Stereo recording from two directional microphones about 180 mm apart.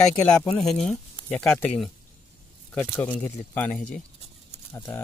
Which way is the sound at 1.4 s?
15° left (ahead or behind).